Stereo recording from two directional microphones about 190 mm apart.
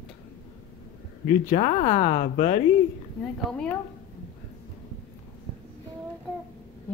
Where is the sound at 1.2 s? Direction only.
40° left (ahead or behind).